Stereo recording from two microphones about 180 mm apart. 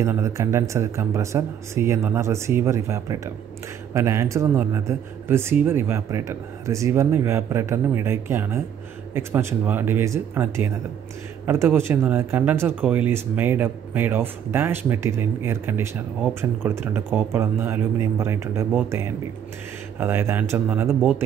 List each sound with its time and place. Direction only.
0.0 s speech: 15° right (ahead or behind)